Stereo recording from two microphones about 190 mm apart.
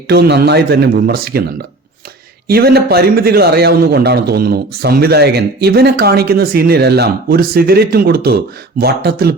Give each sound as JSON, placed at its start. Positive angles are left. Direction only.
{"t": 0.1, "sound": "a man's voice", "side_deg": -60}
{"t": 2.5, "sound": "a man's voice", "side_deg": -55}